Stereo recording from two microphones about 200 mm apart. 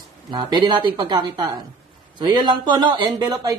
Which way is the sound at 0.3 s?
20° right (ahead or behind).